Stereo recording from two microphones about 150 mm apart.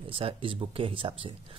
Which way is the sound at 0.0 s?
35° right (ahead or behind).